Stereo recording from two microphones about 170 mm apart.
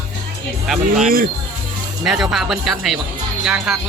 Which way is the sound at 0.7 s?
5° right (ahead or behind).